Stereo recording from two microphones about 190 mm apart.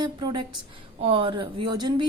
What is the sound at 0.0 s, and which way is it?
A woman's voice, 20° right (ahead or behind).